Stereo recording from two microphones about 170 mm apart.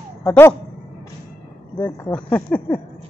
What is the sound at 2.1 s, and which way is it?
Speech, 5° left (ahead or behind).